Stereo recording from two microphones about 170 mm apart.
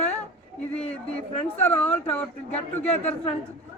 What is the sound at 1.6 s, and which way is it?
Speech, 10° left (ahead or behind).